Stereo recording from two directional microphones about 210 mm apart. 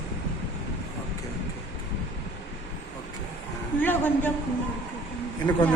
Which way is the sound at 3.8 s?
10° left (ahead or behind).